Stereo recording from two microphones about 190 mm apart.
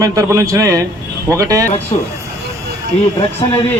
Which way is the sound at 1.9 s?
30° left (ahead or behind).